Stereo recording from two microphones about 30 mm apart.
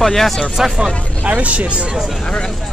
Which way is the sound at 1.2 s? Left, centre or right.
Right.